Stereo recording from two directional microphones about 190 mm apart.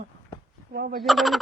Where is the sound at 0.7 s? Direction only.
55° right (ahead or behind).